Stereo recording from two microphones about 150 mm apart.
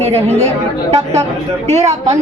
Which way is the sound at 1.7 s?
50° right (ahead or behind).